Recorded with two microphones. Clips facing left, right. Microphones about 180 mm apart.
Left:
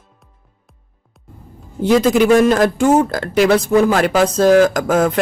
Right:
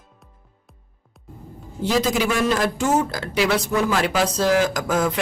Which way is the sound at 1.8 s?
55° left (ahead or behind).